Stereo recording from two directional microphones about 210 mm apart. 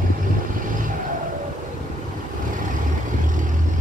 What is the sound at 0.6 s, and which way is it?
Vehicle, 40° right (ahead or behind).